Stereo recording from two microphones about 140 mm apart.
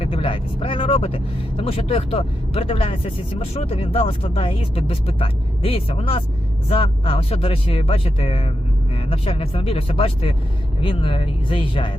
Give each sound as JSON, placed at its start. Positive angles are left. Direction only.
{"t": 0.0, "sound": "speech", "side_deg": 45}